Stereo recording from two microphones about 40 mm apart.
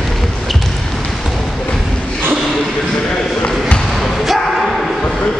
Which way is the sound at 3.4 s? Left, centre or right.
Left.